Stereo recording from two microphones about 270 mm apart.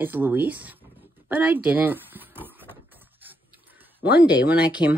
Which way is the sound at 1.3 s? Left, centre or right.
Centre.